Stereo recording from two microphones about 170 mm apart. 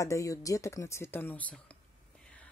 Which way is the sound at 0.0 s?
20° left (ahead or behind).